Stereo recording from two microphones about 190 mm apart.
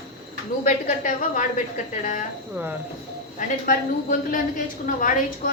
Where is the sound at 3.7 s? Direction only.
45° left (ahead or behind).